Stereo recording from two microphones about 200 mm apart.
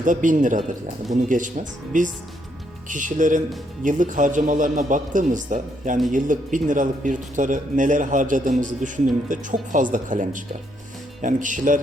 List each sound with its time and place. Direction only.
0.0 s speech: 40° right (ahead or behind)